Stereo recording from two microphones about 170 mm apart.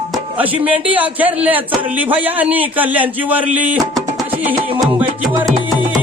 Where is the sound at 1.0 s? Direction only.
10° right (ahead or behind).